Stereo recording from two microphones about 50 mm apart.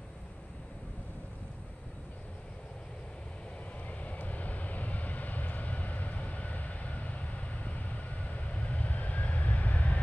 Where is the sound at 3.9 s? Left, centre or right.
Left.